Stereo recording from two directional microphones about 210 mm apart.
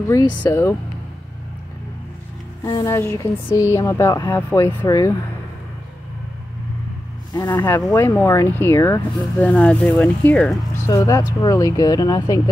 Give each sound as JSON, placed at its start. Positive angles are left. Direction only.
{"t": 0.1, "sound": "speech", "side_deg": 15}
{"t": 2.6, "sound": "speech", "side_deg": 15}
{"t": 7.3, "sound": "speech", "side_deg": 20}